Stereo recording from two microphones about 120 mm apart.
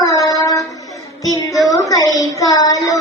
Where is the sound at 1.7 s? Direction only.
30° left (ahead or behind).